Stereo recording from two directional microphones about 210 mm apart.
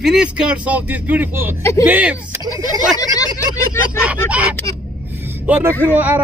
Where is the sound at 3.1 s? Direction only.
15° left (ahead or behind).